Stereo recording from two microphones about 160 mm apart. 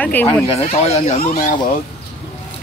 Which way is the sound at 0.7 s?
45° left (ahead or behind).